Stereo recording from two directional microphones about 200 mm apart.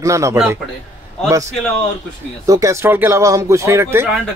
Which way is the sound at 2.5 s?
15° right (ahead or behind).